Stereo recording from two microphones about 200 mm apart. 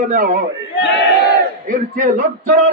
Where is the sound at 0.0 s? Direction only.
45° right (ahead or behind).